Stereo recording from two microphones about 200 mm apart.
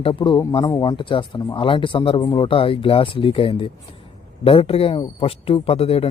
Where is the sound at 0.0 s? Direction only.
25° left (ahead or behind).